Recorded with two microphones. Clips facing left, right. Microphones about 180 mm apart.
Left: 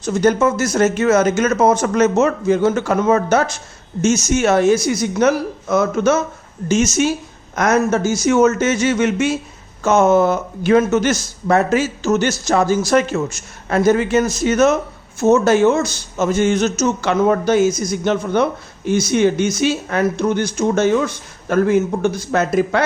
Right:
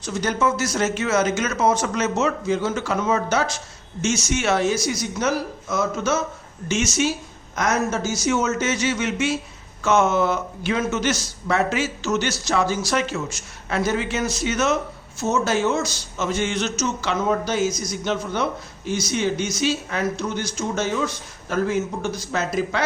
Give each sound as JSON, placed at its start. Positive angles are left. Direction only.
{"t": 0.0, "sound": "a man's voice", "side_deg": 50}
{"t": 6.7, "sound": "a man's voice", "side_deg": 40}
{"t": 7.5, "sound": "a man's voice", "side_deg": 55}